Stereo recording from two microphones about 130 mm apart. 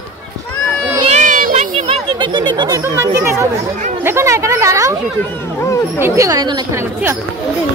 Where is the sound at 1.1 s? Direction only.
80° right.